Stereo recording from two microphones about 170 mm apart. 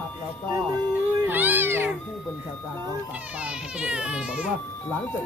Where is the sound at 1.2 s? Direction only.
10° right (ahead or behind).